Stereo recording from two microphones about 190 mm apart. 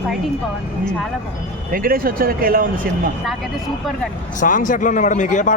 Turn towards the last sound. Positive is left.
turn(degrees=40)  # may be behind; listen again after turning